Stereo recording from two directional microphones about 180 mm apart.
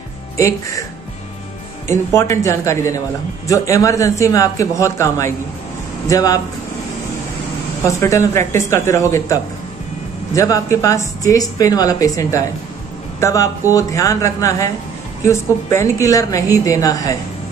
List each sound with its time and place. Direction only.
0.4 s a woman's voice: 15° left (ahead or behind)
2.1 s a woman's voice: 15° left (ahead or behind)
8.0 s a woman's voice: 15° left (ahead or behind)